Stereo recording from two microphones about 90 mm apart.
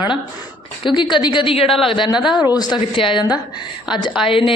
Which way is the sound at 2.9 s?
75° left (ahead or behind).